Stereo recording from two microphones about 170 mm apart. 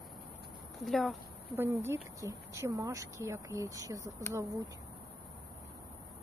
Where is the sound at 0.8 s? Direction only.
Centre (ahead or behind).